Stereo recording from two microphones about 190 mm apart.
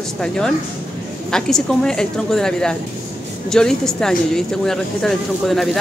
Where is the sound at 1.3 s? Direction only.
5° left (ahead or behind).